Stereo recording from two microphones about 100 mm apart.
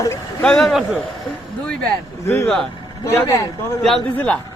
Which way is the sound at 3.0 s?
30° left (ahead or behind).